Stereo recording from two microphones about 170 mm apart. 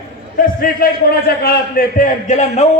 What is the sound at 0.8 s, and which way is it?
A man's voice, 60° left (ahead or behind).